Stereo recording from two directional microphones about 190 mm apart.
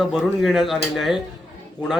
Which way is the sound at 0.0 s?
Centre (ahead or behind).